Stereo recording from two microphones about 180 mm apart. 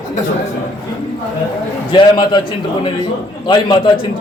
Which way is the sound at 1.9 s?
25° left (ahead or behind).